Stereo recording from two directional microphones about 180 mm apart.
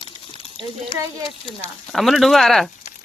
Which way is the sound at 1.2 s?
30° left (ahead or behind).